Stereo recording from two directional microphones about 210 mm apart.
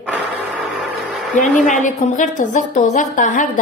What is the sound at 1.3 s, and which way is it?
A woman's voice, 35° left (ahead or behind).